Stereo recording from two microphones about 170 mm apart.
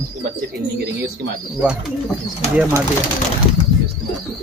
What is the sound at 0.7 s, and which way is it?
Speech, 70° right (ahead or behind).